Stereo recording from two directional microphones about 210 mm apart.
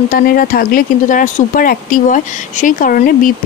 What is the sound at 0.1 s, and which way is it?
Speech, 45° left (ahead or behind).